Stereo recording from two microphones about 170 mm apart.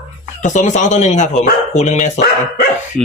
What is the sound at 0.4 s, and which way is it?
A man's voice, 45° left (ahead or behind).